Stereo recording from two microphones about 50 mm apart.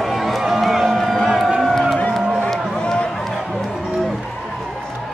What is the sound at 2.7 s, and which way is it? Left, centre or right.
Run, centre.